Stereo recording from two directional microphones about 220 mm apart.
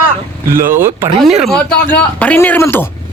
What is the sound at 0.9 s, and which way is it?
Speech, 25° right (ahead or behind).